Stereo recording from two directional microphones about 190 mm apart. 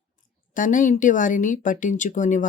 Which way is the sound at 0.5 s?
45° left (ahead or behind).